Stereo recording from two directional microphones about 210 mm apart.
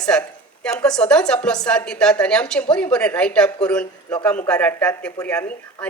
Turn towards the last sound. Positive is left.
turn(degrees=10)  # may be behind; listen again after turning